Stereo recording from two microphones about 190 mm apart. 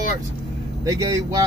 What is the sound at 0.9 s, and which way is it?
Speech, 15° right (ahead or behind).